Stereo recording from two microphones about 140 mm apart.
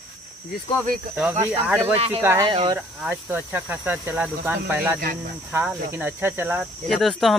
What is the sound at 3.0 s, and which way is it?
Speech, 10° right (ahead or behind).